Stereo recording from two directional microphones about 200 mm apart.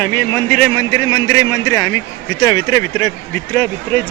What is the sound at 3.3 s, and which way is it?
Speech, 5° left (ahead or behind).